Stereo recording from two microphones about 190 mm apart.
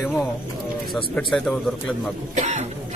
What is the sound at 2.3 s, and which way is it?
Speech, 40° right (ahead or behind).